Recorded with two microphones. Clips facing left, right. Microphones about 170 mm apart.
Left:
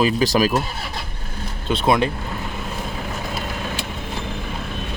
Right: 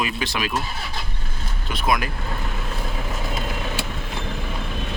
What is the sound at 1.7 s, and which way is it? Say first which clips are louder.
Speech: left 5 dB; 25° left (ahead or behind).